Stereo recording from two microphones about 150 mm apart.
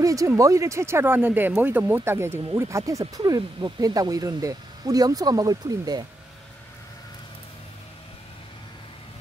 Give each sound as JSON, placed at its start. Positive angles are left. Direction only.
{"t": 0.0, "sound": "speech", "side_deg": -25}